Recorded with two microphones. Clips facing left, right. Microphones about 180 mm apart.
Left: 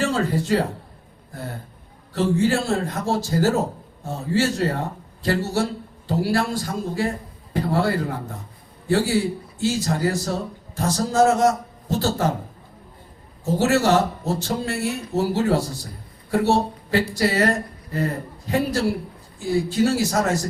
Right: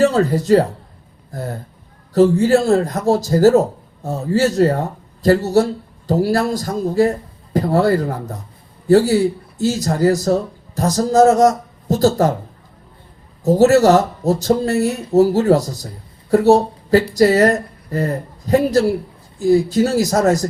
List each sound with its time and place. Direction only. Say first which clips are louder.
0.0 s a woman's voice: right 7 dB; 40° right (ahead or behind)
13.4 s speech: right 8 dB; 40° right (ahead or behind)